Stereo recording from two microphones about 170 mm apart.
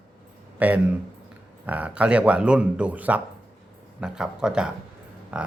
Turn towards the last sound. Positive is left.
turn(degrees=-10)  # may be behind; listen again after turning